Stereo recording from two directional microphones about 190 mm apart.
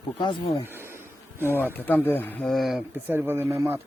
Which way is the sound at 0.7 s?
10° right (ahead or behind).